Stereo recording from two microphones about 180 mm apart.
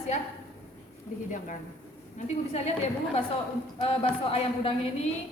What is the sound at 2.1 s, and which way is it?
Speech, 40° left (ahead or behind).